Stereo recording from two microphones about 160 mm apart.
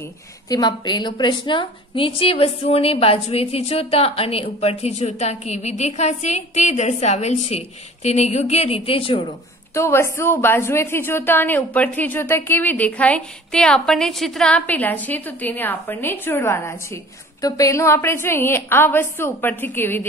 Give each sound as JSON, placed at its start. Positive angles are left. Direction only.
{"t": 0.5, "sound": "a woman's voice", "side_deg": 25}
{"t": 9.8, "sound": "a woman's voice", "side_deg": 15}